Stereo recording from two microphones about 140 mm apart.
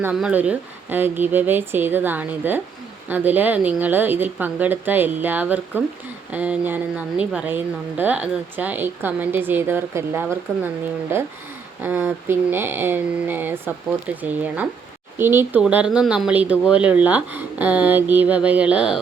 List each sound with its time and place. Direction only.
0.0 s a woman's voice: 10° right (ahead or behind)